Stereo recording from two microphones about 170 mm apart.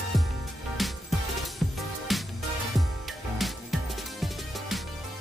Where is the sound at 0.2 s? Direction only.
Centre (ahead or behind).